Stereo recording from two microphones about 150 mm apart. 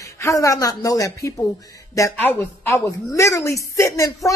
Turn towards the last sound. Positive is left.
turn(degrees=20)  # may be behind; listen again after turning